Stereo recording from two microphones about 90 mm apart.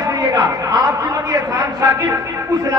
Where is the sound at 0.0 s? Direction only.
45° right (ahead or behind).